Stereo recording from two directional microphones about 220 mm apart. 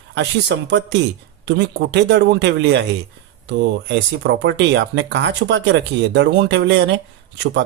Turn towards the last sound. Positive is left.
turn(degrees=-55)  # may be behind; listen again after turning